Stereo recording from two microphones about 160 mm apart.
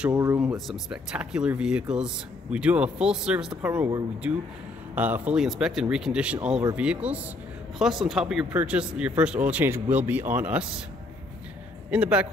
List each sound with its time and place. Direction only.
0.1 s speech: 20° right (ahead or behind)
0.4 s speech: 5° right (ahead or behind)
11.9 s speech: 5° right (ahead or behind)